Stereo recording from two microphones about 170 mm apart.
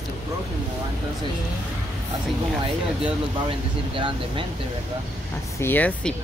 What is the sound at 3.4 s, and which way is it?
Speech, 30° right (ahead or behind).